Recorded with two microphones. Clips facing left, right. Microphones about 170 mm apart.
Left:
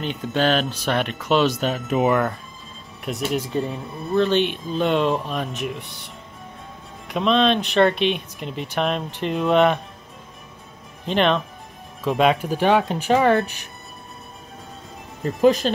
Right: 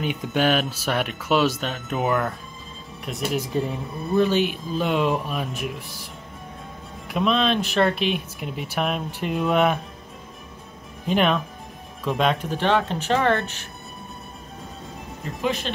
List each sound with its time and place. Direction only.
0.0 s speech: 10° right (ahead or behind)
7.1 s speech: 5° right (ahead or behind)
11.1 s speech: 5° right (ahead or behind); by 13.7 s 10° left (ahead or behind)
15.4 s speech: 40° left (ahead or behind)